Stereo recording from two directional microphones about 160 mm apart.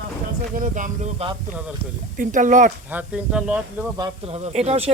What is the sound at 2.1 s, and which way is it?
Speech, 55° right (ahead or behind).